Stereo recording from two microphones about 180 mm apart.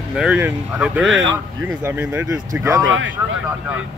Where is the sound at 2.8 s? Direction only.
90° right.